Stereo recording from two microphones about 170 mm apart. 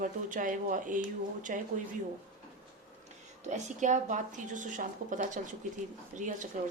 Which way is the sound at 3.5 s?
45° right (ahead or behind).